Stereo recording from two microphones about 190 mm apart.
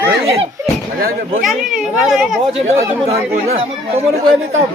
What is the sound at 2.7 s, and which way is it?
Speech, 35° right (ahead or behind).